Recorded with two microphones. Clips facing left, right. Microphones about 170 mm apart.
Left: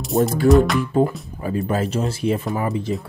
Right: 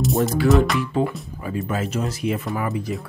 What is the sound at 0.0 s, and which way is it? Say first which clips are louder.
Music: left 1 dB; centre (ahead or behind).